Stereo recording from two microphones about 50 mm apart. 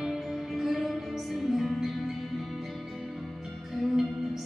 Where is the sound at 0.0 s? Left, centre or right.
Centre.